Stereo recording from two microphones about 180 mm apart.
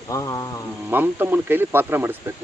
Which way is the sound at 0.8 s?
10° right (ahead or behind).